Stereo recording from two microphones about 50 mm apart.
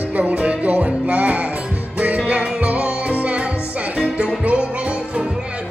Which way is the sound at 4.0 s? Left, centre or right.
Centre.